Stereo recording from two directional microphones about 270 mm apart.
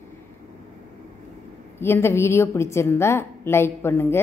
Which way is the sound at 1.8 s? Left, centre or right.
Centre.